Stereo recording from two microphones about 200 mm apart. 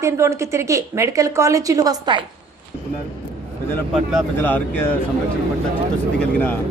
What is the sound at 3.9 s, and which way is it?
Speech, centre (ahead or behind).